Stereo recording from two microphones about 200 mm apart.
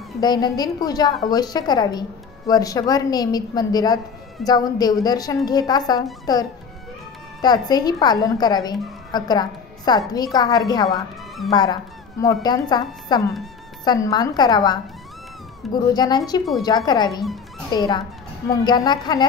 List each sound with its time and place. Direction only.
0.2 s a woman's voice: 20° left (ahead or behind)
7.4 s a woman's voice: 20° left (ahead or behind)